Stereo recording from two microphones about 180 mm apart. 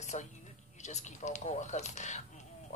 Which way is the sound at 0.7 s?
40° left (ahead or behind).